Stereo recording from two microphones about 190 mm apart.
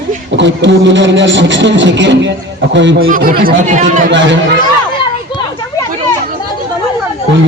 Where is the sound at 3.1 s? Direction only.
50° right (ahead or behind).